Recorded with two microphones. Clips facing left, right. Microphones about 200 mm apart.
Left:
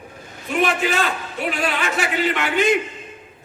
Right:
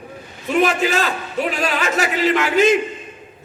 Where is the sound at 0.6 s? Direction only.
40° right (ahead or behind).